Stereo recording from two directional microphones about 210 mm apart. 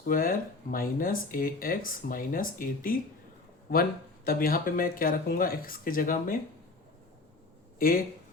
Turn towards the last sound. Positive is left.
turn(degrees=40)  # may be behind; listen again after turning